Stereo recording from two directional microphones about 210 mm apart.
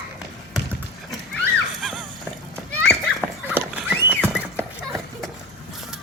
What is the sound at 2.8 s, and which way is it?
Children playing, 5° left (ahead or behind).